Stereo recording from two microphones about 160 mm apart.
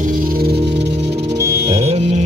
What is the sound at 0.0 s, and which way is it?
Music, 60° right (ahead or behind).